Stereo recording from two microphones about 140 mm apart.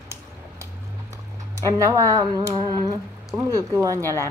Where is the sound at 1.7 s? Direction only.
25° right (ahead or behind).